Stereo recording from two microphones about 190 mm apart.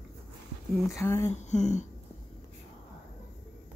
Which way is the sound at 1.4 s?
35° left (ahead or behind).